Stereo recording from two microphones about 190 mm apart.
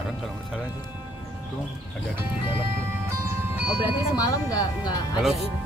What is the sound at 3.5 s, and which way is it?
Music, 10° right (ahead or behind).